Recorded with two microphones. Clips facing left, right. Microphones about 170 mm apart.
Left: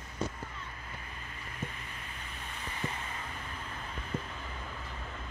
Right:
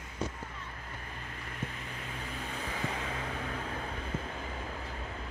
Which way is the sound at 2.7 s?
90° right.